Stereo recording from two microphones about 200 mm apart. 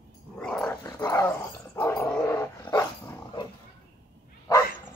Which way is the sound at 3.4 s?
25° left (ahead or behind).